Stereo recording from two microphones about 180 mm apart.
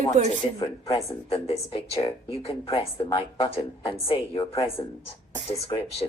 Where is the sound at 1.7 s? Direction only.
30° left (ahead or behind).